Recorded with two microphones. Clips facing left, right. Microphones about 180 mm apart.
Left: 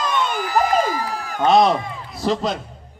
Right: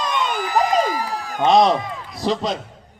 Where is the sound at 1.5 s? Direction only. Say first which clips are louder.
Even; centre (ahead or behind).